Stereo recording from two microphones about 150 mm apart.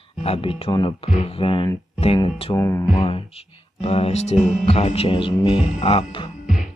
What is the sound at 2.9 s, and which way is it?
Music, 35° left (ahead or behind).